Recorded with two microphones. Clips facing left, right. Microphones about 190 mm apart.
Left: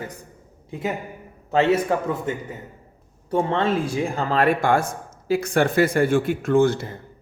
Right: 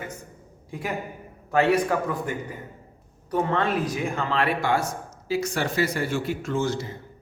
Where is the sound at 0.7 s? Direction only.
25° left (ahead or behind).